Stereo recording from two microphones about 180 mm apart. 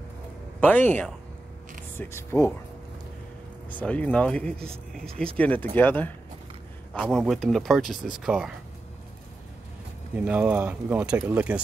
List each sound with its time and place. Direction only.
0.6 s speech: 10° left (ahead or behind)
3.8 s speech: 5° left (ahead or behind)
4.6 s speech: 35° right (ahead or behind)
5.4 s speech: 10° left (ahead or behind)
10.1 s speech: 10° right (ahead or behind)